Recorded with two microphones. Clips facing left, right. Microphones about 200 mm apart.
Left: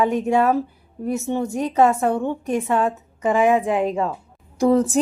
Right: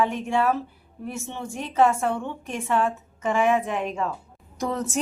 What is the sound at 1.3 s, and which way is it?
A woman's voice, 40° left (ahead or behind).